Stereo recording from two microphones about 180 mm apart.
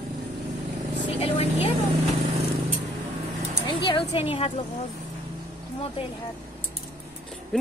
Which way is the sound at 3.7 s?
30° left (ahead or behind).